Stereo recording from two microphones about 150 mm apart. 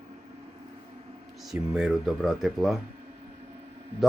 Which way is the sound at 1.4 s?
5° right (ahead or behind).